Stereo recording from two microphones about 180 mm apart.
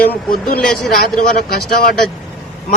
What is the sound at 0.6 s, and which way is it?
Speech, 5° left (ahead or behind).